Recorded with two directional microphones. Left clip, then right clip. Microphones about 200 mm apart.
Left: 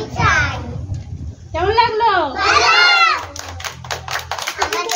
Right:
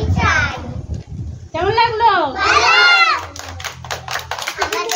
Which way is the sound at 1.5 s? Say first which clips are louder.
Even; 40° right (ahead or behind).